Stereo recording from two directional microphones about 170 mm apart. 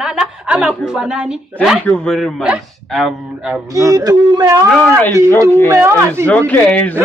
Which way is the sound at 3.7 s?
20° right (ahead or behind).